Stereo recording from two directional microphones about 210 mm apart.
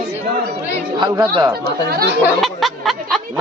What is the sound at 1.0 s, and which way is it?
Speech, 20° right (ahead or behind).